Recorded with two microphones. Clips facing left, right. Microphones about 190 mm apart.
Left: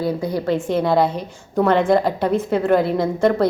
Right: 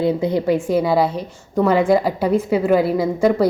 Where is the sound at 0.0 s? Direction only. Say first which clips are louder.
Right 4 dB; 25° right (ahead or behind).